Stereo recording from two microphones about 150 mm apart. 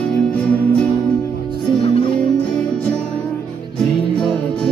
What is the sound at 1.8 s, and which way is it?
Music, 35° left (ahead or behind).